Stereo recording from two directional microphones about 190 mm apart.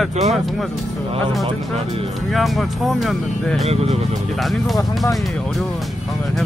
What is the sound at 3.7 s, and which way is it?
Speech, 35° right (ahead or behind).